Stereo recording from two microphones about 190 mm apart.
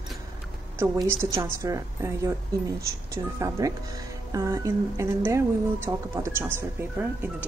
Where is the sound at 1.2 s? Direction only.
15° right (ahead or behind).